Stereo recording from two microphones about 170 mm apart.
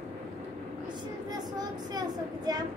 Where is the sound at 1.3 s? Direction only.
25° right (ahead or behind).